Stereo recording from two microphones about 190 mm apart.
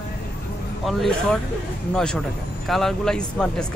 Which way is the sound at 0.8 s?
Centre (ahead or behind).